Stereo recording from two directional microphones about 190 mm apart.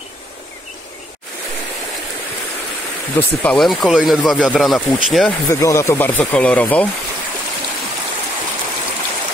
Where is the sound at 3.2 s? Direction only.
5° left (ahead or behind).